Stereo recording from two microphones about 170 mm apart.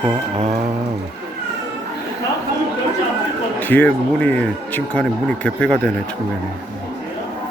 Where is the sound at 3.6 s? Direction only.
10° left (ahead or behind).